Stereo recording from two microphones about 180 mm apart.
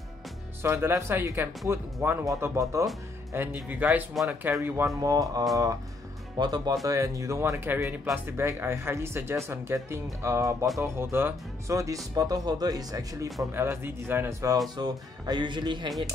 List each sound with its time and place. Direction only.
0.6 s speech: 10° right (ahead or behind)